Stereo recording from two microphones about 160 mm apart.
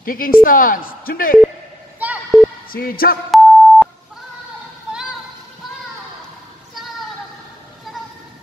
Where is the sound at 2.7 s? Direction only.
70° left (ahead or behind).